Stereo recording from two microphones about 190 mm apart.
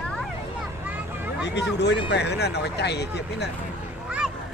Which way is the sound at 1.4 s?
65° left (ahead or behind).